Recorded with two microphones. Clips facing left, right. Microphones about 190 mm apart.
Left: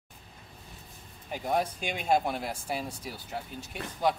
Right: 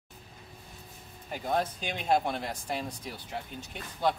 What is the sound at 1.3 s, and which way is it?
Speech, 10° left (ahead or behind).